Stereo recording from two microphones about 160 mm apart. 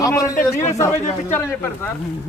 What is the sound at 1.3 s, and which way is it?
Speech, 15° left (ahead or behind).